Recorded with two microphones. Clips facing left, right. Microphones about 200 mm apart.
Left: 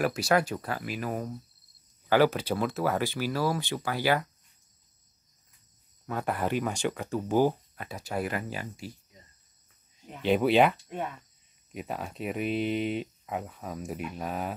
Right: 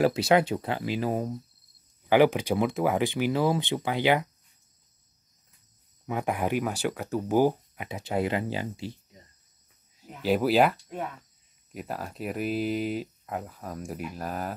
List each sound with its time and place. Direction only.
0.0 s speech: 20° right (ahead or behind)
2.0 s speech: 15° right (ahead or behind)
6.0 s speech: 15° right (ahead or behind)
9.9 s speech: 5° right (ahead or behind)